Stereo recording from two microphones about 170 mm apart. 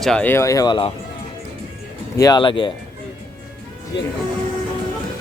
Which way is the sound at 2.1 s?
20° left (ahead or behind).